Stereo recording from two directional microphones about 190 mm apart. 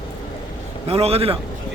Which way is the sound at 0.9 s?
30° right (ahead or behind).